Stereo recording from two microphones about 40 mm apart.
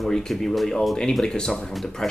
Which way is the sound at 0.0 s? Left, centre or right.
Centre.